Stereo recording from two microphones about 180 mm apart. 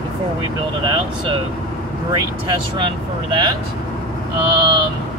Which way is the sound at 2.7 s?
25° right (ahead or behind).